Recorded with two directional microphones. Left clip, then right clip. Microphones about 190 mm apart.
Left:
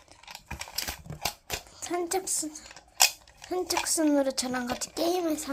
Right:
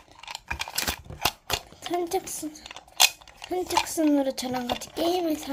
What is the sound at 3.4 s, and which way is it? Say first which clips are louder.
A child's voice: right 3 dB; 15° right (ahead or behind).